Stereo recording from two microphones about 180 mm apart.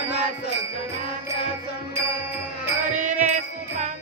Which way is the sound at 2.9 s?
45° right (ahead or behind).